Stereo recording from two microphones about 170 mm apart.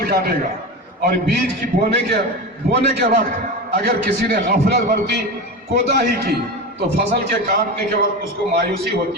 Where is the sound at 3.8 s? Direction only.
70° right (ahead or behind).